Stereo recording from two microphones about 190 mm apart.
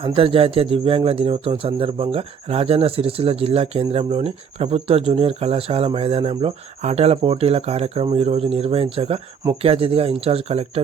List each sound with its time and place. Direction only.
0.0 s speech: 30° right (ahead or behind)